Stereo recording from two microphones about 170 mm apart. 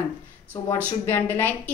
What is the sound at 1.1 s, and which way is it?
Speech, 10° left (ahead or behind).